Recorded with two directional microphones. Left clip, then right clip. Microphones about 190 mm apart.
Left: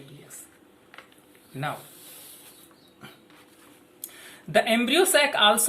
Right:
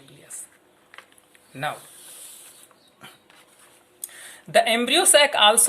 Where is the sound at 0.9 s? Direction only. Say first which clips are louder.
Right 2 dB; 25° right (ahead or behind).